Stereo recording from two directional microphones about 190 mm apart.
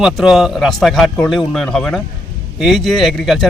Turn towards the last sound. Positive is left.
turn(degrees=0)  # may be behind; listen again after turning